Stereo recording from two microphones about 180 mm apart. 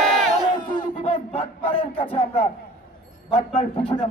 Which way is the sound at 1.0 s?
30° left (ahead or behind).